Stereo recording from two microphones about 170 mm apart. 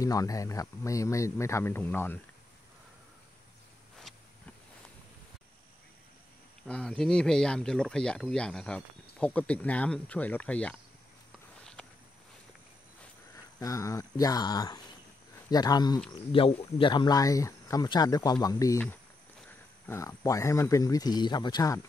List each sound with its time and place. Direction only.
0.0 s speech: 20° left (ahead or behind)
6.7 s speech: 5° left (ahead or behind)
13.6 s speech: 20° left (ahead or behind)